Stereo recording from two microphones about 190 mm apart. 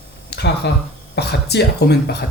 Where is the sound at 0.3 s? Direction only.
60° left (ahead or behind).